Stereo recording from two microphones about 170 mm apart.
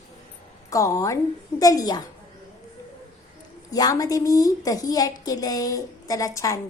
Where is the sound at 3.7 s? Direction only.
20° left (ahead or behind).